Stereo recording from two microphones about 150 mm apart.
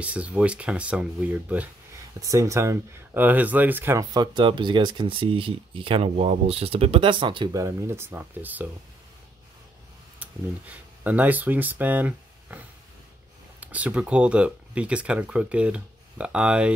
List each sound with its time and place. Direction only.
0.0 s speech: 10° right (ahead or behind)
2.1 s speech: 20° right (ahead or behind)
7.5 s speech: 20° right (ahead or behind)
10.1 s speech: 10° right (ahead or behind)